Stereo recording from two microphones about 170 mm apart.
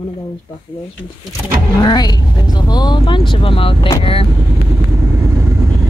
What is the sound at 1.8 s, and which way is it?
Speech, 25° left (ahead or behind).